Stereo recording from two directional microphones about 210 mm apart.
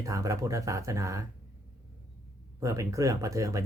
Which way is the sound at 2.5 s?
15° right (ahead or behind).